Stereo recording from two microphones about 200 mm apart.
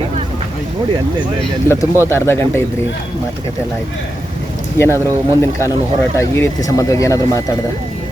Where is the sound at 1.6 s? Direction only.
15° left (ahead or behind).